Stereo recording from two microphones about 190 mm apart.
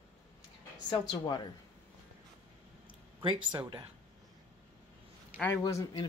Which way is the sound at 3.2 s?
25° right (ahead or behind).